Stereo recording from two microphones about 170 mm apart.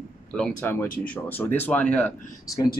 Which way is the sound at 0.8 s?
55° left (ahead or behind).